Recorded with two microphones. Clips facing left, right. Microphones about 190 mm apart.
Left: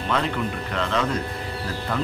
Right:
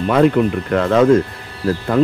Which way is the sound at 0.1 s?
50° right (ahead or behind).